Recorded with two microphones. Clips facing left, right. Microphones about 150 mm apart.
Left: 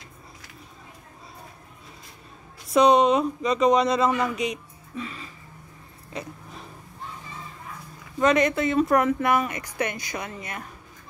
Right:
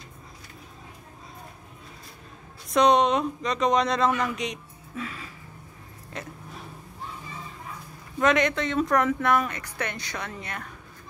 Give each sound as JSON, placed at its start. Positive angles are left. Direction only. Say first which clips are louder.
{"t": 2.7, "sound": "speech", "louder": "left 2 dB", "side_deg": 5}
{"t": 6.1, "sound": "a sound", "louder": "left 2 dB", "side_deg": 0}
{"t": 8.2, "sound": "speech", "louder": "left 2 dB", "side_deg": 0}